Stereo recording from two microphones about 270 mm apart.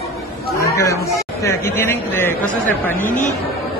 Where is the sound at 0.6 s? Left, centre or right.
Centre.